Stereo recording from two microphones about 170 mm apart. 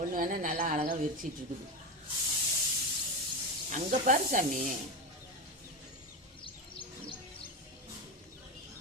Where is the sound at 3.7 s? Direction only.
45° right (ahead or behind).